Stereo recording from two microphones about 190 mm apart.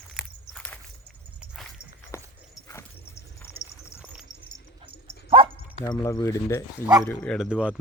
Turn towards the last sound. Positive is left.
turn(degrees=-5)  # may be behind; listen again after turning